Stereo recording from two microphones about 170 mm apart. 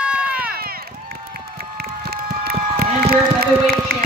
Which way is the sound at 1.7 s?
65° right (ahead or behind).